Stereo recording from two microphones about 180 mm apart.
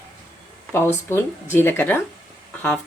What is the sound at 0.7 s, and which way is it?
Speech, 10° left (ahead or behind).